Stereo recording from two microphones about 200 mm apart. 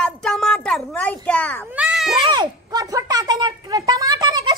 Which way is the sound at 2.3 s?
15° right (ahead or behind).